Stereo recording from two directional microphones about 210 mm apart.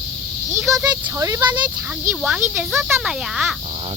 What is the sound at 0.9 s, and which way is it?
Speech, 15° right (ahead or behind).